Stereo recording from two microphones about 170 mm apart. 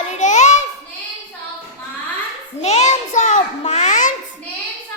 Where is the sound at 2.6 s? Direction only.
40° left (ahead or behind).